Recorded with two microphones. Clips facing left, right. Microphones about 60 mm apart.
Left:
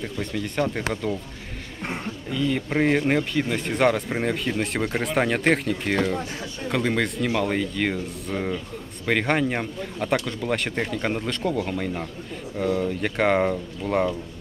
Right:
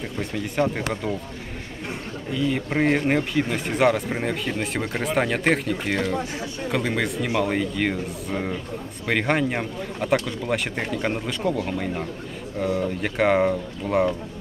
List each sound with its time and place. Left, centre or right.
0.0 s speech: centre
2.3 s speech: centre
6.1 s speech: centre
6.7 s speech: centre